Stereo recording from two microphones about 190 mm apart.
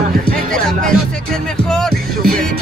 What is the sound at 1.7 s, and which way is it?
Music, 5° left (ahead or behind).